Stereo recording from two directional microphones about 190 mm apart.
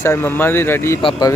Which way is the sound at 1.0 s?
25° left (ahead or behind).